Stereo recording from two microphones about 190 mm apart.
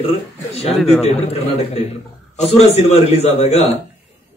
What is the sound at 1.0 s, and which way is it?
Speech, 30° left (ahead or behind).